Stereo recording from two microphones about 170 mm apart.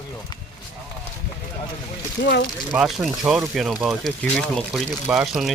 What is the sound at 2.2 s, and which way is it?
Speech, 90° left.